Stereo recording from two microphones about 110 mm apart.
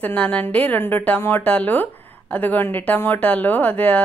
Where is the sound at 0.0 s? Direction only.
15° left (ahead or behind).